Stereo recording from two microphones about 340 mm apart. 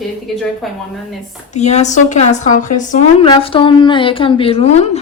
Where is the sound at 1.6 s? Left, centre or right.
Centre.